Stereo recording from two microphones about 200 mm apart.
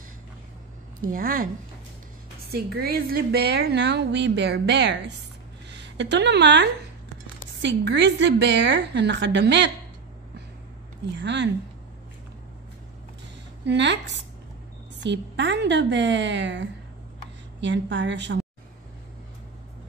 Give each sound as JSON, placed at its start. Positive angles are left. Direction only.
{"t": 1.0, "sound": "speech", "side_deg": -45}
{"t": 2.5, "sound": "a woman's voice", "side_deg": -50}
{"t": 11.1, "sound": "a woman's voice", "side_deg": -60}
{"t": 13.7, "sound": "a woman's voice", "side_deg": -60}